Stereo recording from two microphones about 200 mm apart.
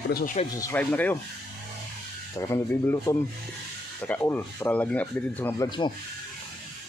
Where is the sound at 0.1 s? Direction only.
40° left (ahead or behind).